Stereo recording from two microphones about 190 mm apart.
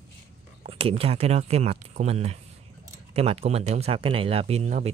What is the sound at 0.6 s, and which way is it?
Speech, 30° right (ahead or behind).